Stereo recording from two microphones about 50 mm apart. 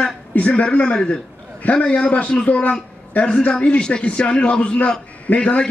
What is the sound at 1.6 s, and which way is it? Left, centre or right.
A man's voice, left.